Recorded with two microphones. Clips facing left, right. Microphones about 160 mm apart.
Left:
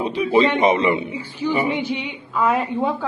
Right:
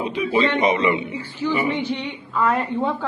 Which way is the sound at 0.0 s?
35° left (ahead or behind).